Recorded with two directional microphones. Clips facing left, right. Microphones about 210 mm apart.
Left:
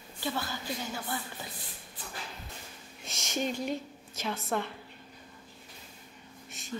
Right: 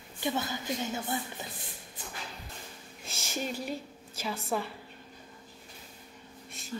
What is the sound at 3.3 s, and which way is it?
A woman's voice, 5° right (ahead or behind).